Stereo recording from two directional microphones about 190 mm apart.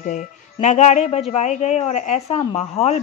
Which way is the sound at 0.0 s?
45° left (ahead or behind).